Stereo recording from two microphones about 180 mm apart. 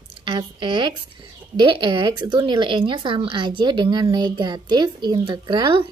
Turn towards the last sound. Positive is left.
turn(degrees=-25)  # may be behind; listen again after turning